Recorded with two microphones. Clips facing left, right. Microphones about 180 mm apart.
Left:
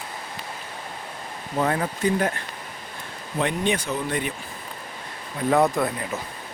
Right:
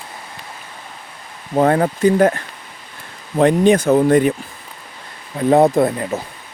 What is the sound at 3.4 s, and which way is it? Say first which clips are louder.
Speech: right 12 dB; 45° right (ahead or behind).